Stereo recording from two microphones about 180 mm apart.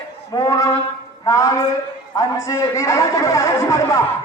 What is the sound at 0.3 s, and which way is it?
A man's voice, 20° left (ahead or behind).